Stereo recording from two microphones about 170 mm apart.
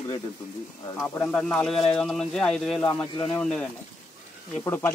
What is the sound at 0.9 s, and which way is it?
Speech, 5° left (ahead or behind).